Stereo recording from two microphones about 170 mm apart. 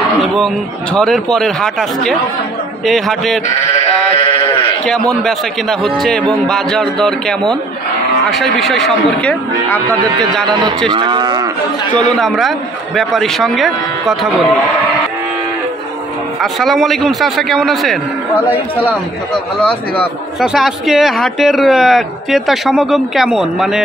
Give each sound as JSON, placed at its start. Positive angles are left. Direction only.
{"t": 0.9, "sound": "a man's voice", "side_deg": 0}
{"t": 4.2, "sound": "sheep", "side_deg": 35}
{"t": 4.8, "sound": "a man's voice", "side_deg": 5}
{"t": 10.9, "sound": "cattle", "side_deg": -25}
{"t": 12.2, "sound": "a man's voice", "side_deg": 0}
{"t": 16.3, "sound": "a man's voice", "side_deg": 0}